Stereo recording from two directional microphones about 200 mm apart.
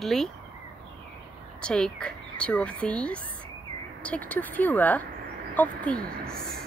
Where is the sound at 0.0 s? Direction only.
Centre (ahead or behind).